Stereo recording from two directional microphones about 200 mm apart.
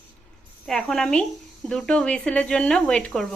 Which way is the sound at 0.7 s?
5° left (ahead or behind).